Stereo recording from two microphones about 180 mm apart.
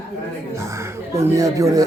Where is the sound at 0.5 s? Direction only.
15° right (ahead or behind).